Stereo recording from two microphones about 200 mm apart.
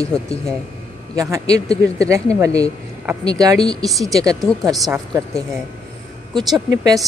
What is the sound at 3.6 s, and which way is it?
Speech, centre (ahead or behind).